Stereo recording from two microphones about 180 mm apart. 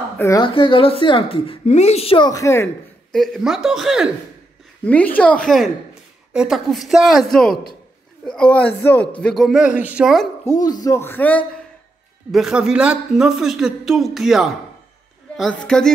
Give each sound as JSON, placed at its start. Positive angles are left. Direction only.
{"t": 0.2, "sound": "a man's voice", "side_deg": 15}
{"t": 0.5, "sound": "a woman's voice", "side_deg": 30}
{"t": 3.1, "sound": "a man's voice", "side_deg": 0}
{"t": 4.8, "sound": "a man's voice", "side_deg": 10}
{"t": 10.4, "sound": "a man's voice", "side_deg": 20}
{"t": 12.3, "sound": "a man's voice", "side_deg": 0}